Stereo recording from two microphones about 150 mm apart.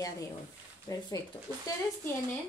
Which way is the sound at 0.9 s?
25° left (ahead or behind).